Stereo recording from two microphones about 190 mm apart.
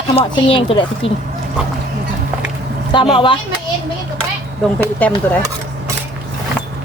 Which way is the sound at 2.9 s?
25° left (ahead or behind).